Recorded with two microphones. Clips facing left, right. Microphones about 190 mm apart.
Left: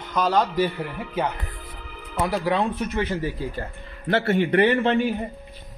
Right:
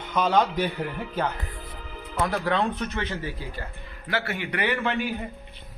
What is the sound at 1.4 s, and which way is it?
Music, 15° right (ahead or behind).